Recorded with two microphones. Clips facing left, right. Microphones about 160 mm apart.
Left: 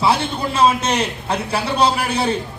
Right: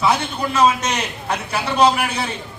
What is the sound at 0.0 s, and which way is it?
A man's voice, 30° left (ahead or behind).